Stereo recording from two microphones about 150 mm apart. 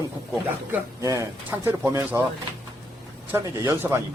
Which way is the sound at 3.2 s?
15° right (ahead or behind).